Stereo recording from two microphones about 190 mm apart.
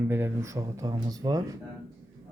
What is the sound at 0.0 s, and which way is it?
Speech, 10° right (ahead or behind).